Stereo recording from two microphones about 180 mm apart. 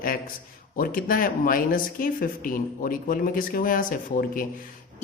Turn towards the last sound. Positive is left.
turn(degrees=50)  # may be behind; listen again after turning